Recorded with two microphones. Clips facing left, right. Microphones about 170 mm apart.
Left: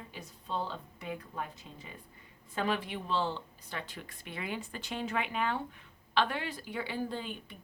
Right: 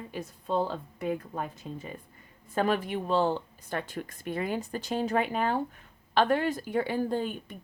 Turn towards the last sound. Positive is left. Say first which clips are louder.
# right 8 dB
turn(degrees=-45)  # may be behind; listen again after turning